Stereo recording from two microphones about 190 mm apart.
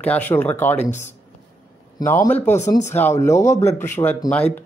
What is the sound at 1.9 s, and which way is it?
Speech, 15° left (ahead or behind).